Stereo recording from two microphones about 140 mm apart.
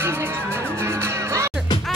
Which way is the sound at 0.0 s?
15° right (ahead or behind).